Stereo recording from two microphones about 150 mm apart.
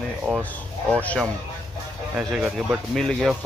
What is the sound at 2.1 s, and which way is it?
Speech, 5° right (ahead or behind).